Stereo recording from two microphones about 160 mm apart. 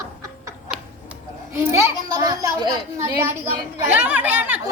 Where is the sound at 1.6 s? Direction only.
20° right (ahead or behind).